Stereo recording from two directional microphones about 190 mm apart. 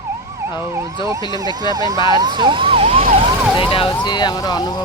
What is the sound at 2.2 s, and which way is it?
Emergency vehicle, 25° right (ahead or behind).